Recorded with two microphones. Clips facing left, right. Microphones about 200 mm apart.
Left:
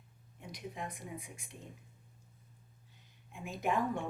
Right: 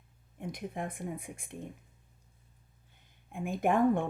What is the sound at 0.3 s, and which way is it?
Speech, 55° right (ahead or behind).